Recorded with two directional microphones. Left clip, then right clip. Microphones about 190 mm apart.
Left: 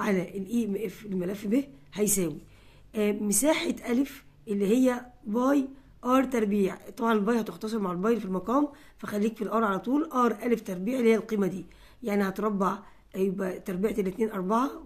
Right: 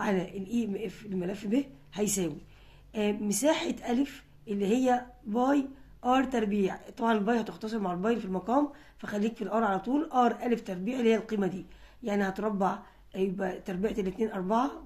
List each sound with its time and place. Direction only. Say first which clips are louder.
0.0 s a woman's voice: left 2 dB; 30° left (ahead or behind)